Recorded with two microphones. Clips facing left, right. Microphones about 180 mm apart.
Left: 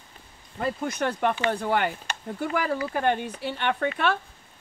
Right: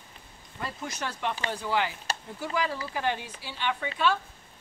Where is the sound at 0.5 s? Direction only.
55° left (ahead or behind).